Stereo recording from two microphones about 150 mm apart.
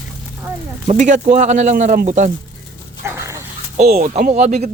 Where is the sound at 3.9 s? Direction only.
50° right (ahead or behind).